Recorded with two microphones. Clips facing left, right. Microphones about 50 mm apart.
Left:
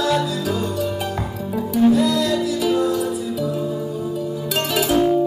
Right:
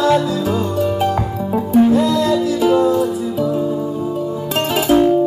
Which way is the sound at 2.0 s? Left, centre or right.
Right.